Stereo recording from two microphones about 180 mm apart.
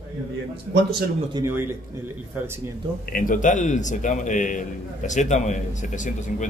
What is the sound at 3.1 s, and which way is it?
A man's voice, 50° left (ahead or behind).